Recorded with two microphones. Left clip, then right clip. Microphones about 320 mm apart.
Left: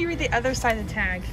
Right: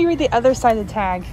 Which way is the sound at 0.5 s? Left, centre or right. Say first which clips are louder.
Right 7 dB; centre.